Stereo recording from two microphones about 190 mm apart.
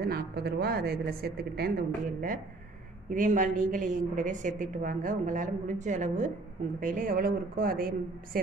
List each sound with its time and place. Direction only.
0.0 s a woman's voice: 55° right (ahead or behind)
3.1 s a woman's voice: 45° right (ahead or behind)